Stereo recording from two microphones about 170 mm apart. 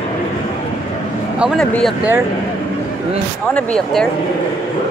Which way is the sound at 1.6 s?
5° left (ahead or behind).